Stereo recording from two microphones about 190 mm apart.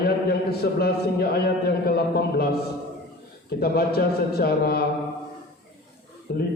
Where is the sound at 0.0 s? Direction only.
55° left (ahead or behind).